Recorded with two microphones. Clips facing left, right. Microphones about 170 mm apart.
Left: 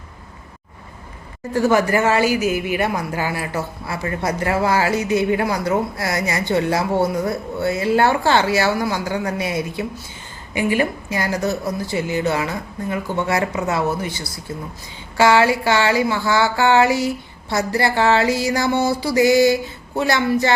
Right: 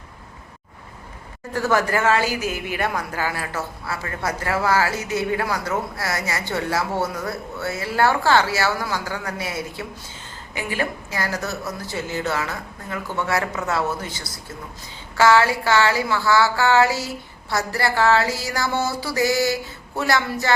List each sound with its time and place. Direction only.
1.5 s a woman's voice: 15° left (ahead or behind)
15.2 s a woman's voice: 15° left (ahead or behind)